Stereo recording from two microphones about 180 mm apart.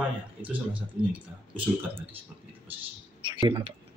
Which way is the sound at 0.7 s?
10° right (ahead or behind).